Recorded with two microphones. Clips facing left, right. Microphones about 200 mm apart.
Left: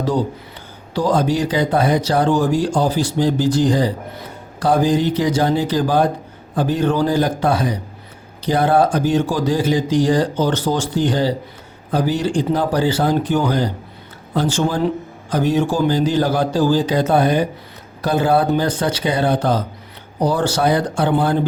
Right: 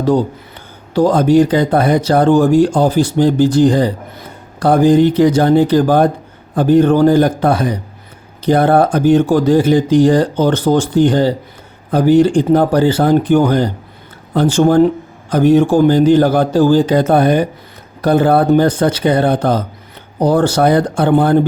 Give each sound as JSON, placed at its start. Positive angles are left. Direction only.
{"t": 0.9, "sound": "speech", "side_deg": -55}